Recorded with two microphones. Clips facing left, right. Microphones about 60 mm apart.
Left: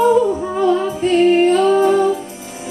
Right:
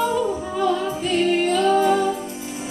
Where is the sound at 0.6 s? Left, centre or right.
Left.